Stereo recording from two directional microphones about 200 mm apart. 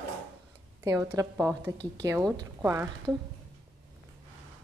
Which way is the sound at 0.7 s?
15° right (ahead or behind).